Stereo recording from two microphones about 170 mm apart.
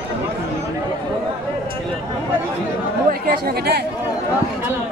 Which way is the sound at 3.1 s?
65° right (ahead or behind).